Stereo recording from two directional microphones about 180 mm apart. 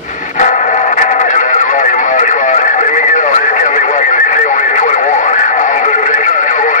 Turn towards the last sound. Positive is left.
turn(degrees=45)  # may be behind; listen again after turning